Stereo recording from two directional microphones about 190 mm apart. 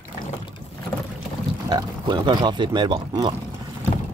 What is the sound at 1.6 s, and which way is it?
Speech, 20° right (ahead or behind).